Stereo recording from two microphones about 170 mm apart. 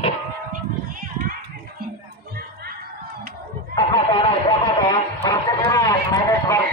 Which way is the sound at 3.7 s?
30° left (ahead or behind).